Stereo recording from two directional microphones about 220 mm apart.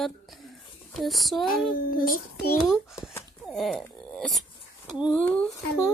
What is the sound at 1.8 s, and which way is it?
Child singing, 40° left (ahead or behind).